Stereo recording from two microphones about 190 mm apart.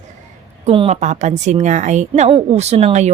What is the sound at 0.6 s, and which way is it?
A woman's voice, 30° right (ahead or behind).